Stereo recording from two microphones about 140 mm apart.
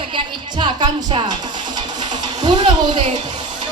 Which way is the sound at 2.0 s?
35° right (ahead or behind).